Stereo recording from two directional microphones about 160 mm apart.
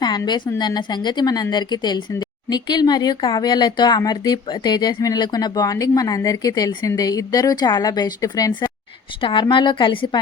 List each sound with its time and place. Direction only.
0.0 s a woman's voice: 25° left (ahead or behind)